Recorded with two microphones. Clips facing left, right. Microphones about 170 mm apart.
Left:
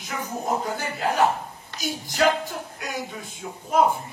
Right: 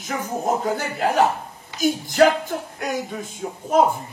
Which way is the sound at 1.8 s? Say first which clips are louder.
Right 6 dB; 50° right (ahead or behind).